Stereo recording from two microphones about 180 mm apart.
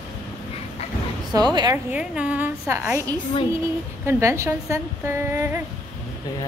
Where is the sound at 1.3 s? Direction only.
25° right (ahead or behind).